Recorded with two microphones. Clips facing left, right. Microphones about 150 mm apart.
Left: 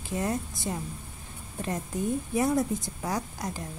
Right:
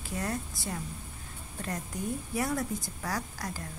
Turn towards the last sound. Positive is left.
turn(degrees=20)  # may be behind; listen again after turning